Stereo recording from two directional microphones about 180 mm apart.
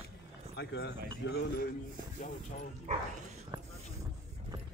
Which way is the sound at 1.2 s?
90° left.